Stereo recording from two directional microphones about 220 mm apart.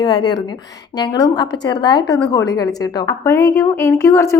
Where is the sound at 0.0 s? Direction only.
20° left (ahead or behind).